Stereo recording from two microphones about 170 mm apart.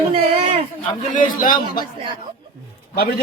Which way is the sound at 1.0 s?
50° left (ahead or behind).